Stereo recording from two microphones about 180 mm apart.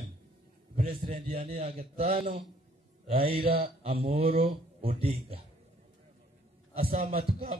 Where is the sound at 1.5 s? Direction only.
35° right (ahead or behind).